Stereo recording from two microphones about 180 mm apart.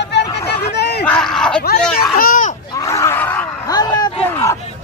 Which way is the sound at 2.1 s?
50° left (ahead or behind).